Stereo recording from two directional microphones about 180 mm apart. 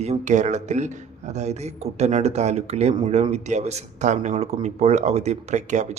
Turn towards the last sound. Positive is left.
turn(degrees=-40)  # may be behind; listen again after turning